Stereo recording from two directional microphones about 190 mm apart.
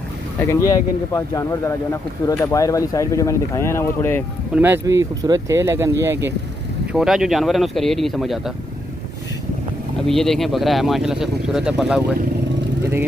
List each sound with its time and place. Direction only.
0.4 s speech: 15° left (ahead or behind)
4.6 s speech: 10° right (ahead or behind)
6.9 s speech: 5° right (ahead or behind)
10.0 s speech: centre (ahead or behind)